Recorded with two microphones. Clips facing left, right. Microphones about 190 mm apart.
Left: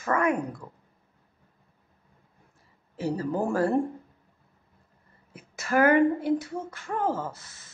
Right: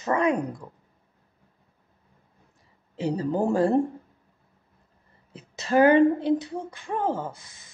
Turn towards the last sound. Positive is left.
turn(degrees=-15)  # may be behind; listen again after turning